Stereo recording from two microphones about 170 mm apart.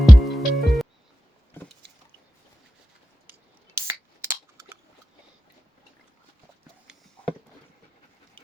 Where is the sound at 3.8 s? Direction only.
15° right (ahead or behind).